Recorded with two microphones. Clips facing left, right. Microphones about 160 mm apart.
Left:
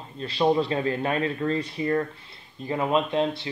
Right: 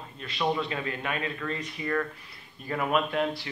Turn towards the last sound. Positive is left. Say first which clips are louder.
# left 3 dB
turn(degrees=25)  # may be behind; listen again after turning